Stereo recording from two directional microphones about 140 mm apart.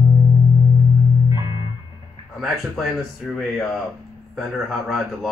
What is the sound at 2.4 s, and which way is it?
Speech, centre (ahead or behind).